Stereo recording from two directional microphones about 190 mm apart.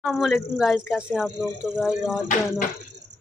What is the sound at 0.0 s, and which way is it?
Speech, centre (ahead or behind).